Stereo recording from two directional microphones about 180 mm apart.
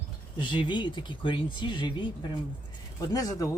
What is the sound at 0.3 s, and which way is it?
Speech, 25° left (ahead or behind).